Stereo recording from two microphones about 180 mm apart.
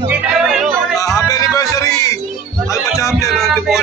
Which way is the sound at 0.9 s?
20° left (ahead or behind).